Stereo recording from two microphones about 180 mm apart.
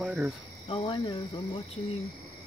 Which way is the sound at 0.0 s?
5° right (ahead or behind).